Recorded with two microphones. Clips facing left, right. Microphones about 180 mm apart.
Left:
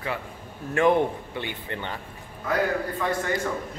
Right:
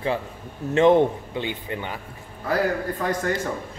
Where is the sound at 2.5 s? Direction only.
40° right (ahead or behind).